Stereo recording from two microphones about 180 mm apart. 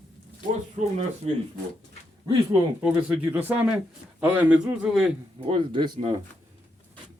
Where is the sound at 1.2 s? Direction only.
30° right (ahead or behind).